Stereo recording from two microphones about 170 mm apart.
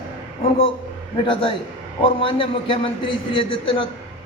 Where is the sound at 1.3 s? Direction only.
30° left (ahead or behind).